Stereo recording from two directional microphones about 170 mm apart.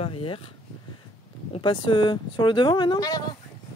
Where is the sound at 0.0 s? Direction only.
30° left (ahead or behind).